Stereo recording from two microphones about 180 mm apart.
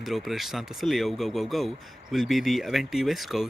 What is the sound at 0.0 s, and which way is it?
Speech, centre (ahead or behind).